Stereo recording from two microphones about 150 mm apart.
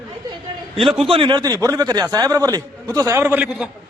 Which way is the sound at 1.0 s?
35° right (ahead or behind).